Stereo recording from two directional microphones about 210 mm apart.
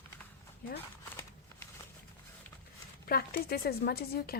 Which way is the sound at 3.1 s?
45° left (ahead or behind).